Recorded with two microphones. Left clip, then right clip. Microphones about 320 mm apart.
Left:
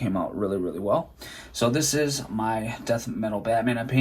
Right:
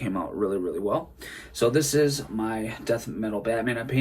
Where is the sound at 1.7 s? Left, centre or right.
Centre.